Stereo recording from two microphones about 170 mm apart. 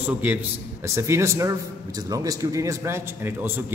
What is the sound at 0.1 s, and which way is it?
A man's voice, 10° right (ahead or behind).